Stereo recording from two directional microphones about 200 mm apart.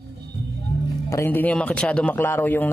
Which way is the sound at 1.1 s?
10° left (ahead or behind).